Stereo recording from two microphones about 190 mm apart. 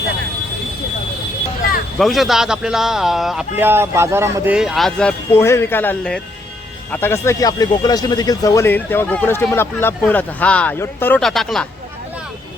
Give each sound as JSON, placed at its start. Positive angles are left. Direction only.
{"t": 2.0, "sound": "a man's voice", "side_deg": 0}